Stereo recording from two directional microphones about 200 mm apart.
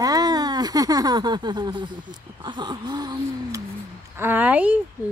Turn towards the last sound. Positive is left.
turn(degrees=-10)  # may be behind; listen again after turning